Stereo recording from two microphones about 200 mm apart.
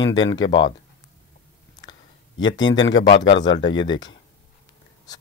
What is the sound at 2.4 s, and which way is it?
Speech, 70° left (ahead or behind).